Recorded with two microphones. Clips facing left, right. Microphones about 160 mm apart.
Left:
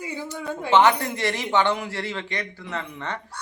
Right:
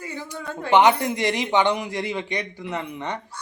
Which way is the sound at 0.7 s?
15° right (ahead or behind).